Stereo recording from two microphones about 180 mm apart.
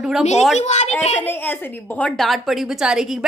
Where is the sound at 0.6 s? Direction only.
40° left (ahead or behind).